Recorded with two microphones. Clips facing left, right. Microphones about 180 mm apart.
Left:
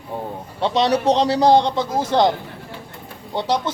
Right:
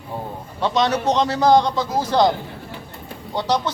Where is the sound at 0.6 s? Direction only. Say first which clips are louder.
Left 2 dB; 30° left (ahead or behind).